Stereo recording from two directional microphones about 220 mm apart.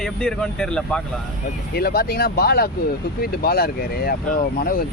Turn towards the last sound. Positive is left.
turn(degrees=40)  # may be behind; listen again after turning